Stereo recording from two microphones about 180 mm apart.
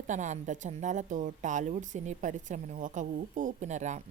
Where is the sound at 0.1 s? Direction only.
45° right (ahead or behind).